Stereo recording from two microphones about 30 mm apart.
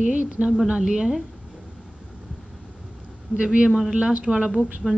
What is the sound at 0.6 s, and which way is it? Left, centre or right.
Speech, right.